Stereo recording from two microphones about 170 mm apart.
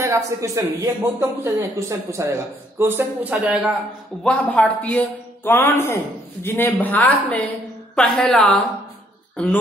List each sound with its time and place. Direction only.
0.0 s speech: 15° right (ahead or behind)
4.2 s a woman's voice: 5° left (ahead or behind)